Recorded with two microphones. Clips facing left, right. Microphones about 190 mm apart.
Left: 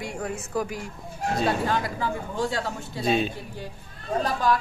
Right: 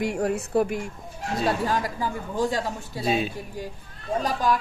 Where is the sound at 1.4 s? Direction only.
40° right (ahead or behind).